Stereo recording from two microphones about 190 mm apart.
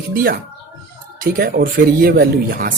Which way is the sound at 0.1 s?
50° right (ahead or behind).